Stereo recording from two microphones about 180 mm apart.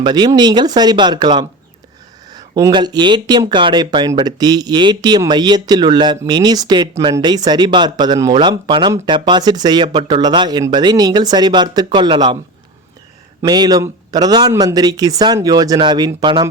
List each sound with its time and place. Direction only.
0.0 s speech: 25° right (ahead or behind)
13.4 s speech: 20° right (ahead or behind)